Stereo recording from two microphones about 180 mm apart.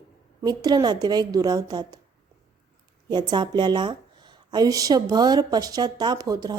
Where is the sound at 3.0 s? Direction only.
25° right (ahead or behind).